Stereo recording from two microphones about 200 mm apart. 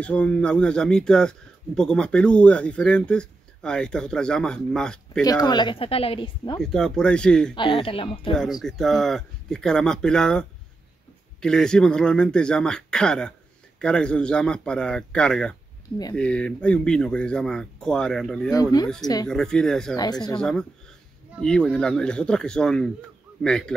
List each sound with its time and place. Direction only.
0.0 s speech: 5° left (ahead or behind)
5.2 s speech: 20° left (ahead or behind)
6.6 s speech: centre (ahead or behind)
7.5 s speech: 25° left (ahead or behind)
8.6 s speech: centre (ahead or behind)
11.4 s speech: 5° left (ahead or behind)
18.5 s speech: 20° left (ahead or behind)
19.2 s speech: 5° left (ahead or behind)